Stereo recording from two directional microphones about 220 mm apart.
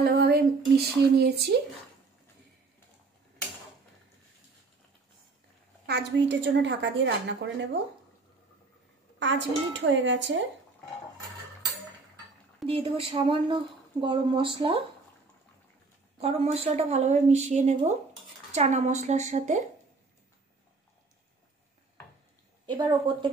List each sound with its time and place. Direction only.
0.0 s a sound: 45° right (ahead or behind)
0.7 s a woman's voice: 45° right (ahead or behind)
5.9 s a woman's voice: 50° right (ahead or behind)
9.2 s a woman's voice: 55° right (ahead or behind)
12.6 s a woman's voice: 25° right (ahead or behind)
16.2 s a woman's voice: 30° right (ahead or behind)
22.7 s a woman's voice: 20° right (ahead or behind)